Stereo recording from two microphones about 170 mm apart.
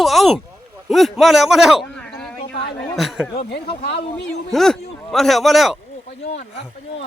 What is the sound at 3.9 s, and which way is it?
Speech, 85° left.